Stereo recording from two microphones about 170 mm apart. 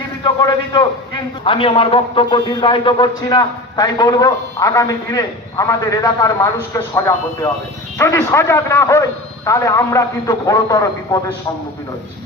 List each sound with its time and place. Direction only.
0.4 s a man's voice: 25° left (ahead or behind)